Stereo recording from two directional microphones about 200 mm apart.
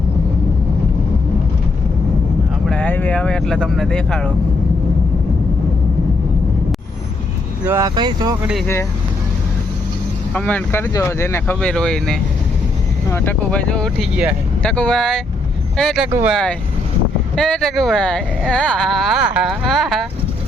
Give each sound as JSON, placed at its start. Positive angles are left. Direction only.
{"t": 2.6, "sound": "speech", "side_deg": 5}
{"t": 7.7, "sound": "speech", "side_deg": -15}
{"t": 8.6, "sound": "speech", "side_deg": 15}
{"t": 10.3, "sound": "speech", "side_deg": 5}